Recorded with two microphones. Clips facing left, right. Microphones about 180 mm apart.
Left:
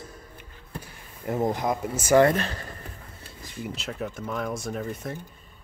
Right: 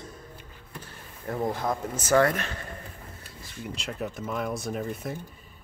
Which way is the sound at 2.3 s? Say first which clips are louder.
Left 5 dB; 30° left (ahead or behind).